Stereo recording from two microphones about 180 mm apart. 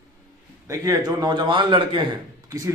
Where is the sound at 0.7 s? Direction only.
20° right (ahead or behind).